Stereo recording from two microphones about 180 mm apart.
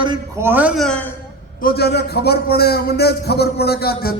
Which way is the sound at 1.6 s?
60° left (ahead or behind).